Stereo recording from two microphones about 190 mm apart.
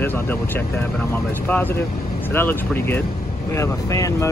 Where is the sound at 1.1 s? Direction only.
10° left (ahead or behind).